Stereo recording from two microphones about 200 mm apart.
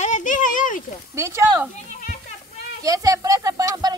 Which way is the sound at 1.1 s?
15° right (ahead or behind).